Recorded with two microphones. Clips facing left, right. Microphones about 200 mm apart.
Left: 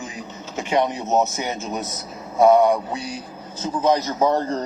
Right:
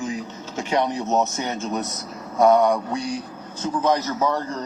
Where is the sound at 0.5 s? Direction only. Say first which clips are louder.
Left 1 dB; 20° left (ahead or behind).